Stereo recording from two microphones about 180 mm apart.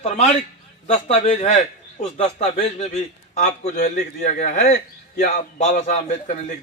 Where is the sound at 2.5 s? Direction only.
40° left (ahead or behind).